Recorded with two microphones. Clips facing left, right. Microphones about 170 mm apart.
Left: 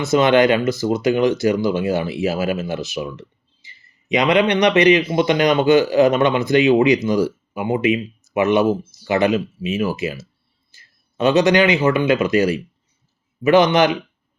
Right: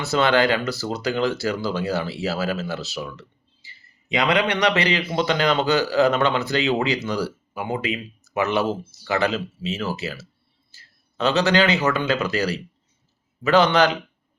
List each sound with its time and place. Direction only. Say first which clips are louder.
0.0 s speech: left 5 dB; 20° left (ahead or behind)
10.7 s a sound: left 1 dB; 15° left (ahead or behind)
11.9 s speech: left 6 dB; 15° left (ahead or behind)